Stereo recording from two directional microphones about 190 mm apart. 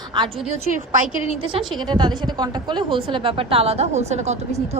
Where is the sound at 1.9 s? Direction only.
20° right (ahead or behind).